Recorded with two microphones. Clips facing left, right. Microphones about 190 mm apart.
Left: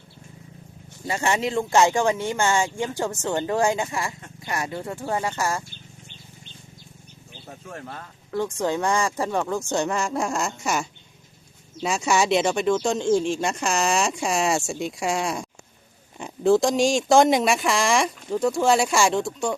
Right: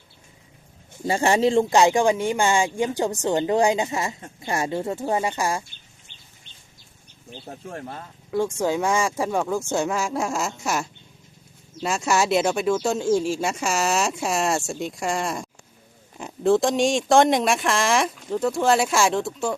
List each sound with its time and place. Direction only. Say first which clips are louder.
1.0 s speech: right 5 dB; 30° right (ahead or behind)
1.7 s speech: right 2 dB; 15° right (ahead or behind)
7.4 s speech: right 3 dB; 30° right (ahead or behind)
8.3 s speech: right 2 dB; 10° right (ahead or behind)